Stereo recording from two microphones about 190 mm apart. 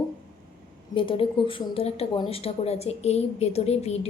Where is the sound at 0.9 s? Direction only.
30° left (ahead or behind).